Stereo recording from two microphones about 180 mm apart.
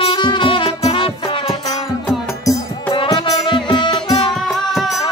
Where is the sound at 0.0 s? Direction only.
25° left (ahead or behind).